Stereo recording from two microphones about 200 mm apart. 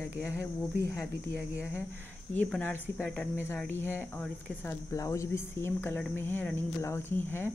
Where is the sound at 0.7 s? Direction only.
55° right (ahead or behind).